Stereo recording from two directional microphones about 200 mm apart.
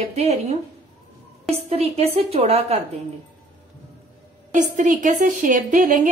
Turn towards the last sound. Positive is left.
turn(degrees=-40)  # may be behind; listen again after turning